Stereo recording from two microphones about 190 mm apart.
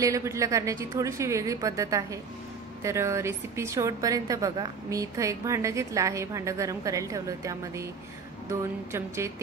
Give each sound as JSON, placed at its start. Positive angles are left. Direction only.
{"t": 0.0, "sound": "a woman's voice", "side_deg": -15}